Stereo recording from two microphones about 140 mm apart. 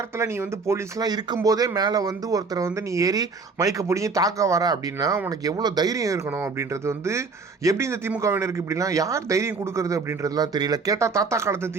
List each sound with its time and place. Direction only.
0.2 s speech: 20° right (ahead or behind)